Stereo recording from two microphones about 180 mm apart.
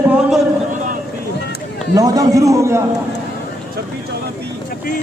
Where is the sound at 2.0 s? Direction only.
20° right (ahead or behind).